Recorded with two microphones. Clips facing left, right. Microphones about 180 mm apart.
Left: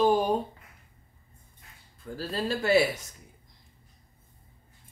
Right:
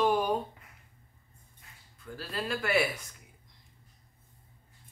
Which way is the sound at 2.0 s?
30° left (ahead or behind).